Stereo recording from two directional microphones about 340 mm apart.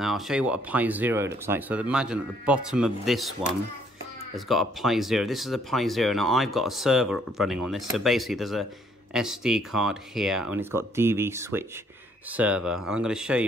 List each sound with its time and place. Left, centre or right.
0.0 s speech: centre
4.5 s speech: centre